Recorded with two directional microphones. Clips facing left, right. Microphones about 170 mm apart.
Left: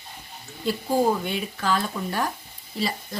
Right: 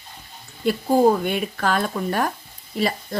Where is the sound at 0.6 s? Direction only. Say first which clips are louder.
Right 5 dB; 60° right (ahead or behind).